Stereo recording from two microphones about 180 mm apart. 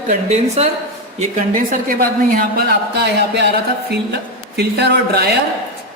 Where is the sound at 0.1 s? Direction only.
40° right (ahead or behind); by 3.4 s 65° right (ahead or behind).